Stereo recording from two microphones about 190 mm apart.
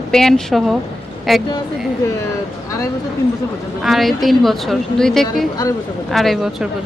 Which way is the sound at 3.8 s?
Centre (ahead or behind).